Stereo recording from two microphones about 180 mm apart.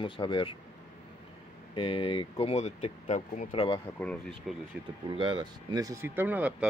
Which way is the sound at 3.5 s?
25° left (ahead or behind).